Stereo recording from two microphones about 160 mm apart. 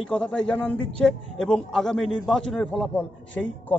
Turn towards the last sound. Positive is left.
turn(degrees=5)  # may be behind; listen again after turning